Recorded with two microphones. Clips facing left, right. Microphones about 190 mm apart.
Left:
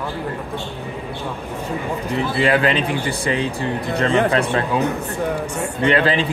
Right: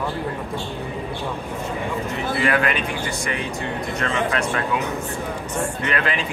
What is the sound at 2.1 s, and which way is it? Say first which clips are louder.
A man's voice: left 4 dB; 30° left (ahead or behind).